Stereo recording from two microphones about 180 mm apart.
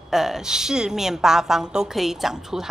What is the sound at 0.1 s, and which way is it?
A woman's voice, centre (ahead or behind).